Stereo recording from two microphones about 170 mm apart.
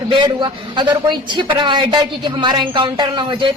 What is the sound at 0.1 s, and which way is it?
A woman's voice, 25° right (ahead or behind).